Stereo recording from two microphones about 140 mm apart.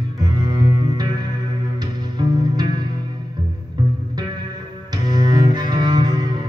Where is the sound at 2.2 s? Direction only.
30° right (ahead or behind).